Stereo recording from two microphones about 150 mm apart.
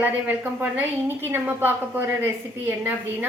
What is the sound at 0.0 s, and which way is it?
A woman's voice, 10° right (ahead or behind).